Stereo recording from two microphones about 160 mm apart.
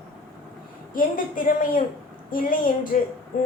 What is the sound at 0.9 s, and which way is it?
A woman's voice, 60° left (ahead or behind).